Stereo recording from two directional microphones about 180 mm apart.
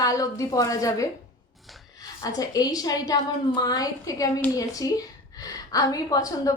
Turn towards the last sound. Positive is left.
turn(degrees=20)  # may be behind; listen again after turning